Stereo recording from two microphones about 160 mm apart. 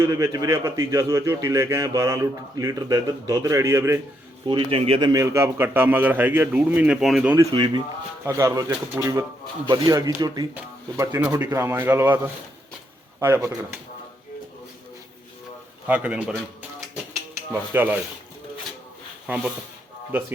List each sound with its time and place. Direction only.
0.0 s a man's voice: 20° right (ahead or behind)
4.4 s a man's voice: 30° right (ahead or behind); by 7.3 s 5° right (ahead or behind)
7.3 s a man's voice: 30° right (ahead or behind)
15.9 s a man's voice: 5° right (ahead or behind)
17.5 s a man's voice: 10° right (ahead or behind)